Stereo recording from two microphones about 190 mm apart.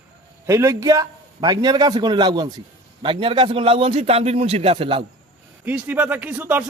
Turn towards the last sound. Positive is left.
turn(degrees=-10)  # may be behind; listen again after turning